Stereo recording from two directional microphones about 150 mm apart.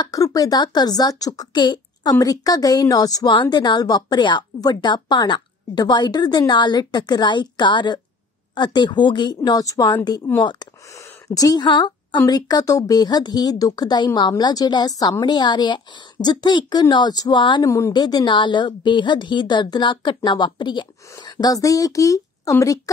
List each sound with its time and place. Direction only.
0.0 s speech: 25° left (ahead or behind)
10.4 s a woman's voice: 30° left (ahead or behind)
17.6 s a woman's voice: 20° left (ahead or behind)